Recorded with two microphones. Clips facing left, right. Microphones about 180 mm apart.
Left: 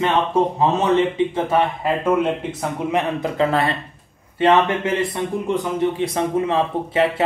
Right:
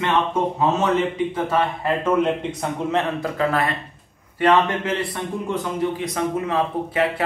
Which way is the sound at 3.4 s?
25° left (ahead or behind).